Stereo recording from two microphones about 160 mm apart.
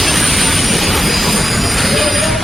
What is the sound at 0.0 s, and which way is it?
Train, centre (ahead or behind).